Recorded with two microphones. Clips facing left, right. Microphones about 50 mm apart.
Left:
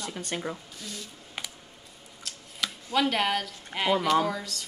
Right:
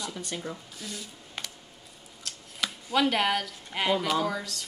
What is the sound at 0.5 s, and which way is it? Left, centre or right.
Speech, centre.